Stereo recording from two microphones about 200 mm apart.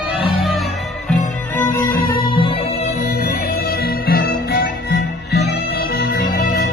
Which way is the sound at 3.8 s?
50° left (ahead or behind).